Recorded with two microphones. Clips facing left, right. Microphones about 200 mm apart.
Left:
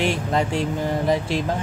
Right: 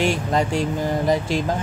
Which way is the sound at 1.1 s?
40° right (ahead or behind).